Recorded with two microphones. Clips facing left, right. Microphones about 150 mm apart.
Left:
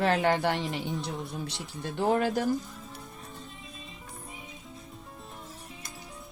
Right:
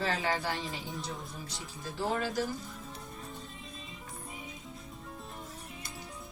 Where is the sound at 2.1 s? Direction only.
55° left (ahead or behind).